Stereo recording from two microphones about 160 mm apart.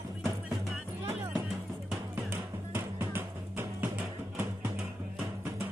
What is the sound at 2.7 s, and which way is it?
Music, 10° right (ahead or behind).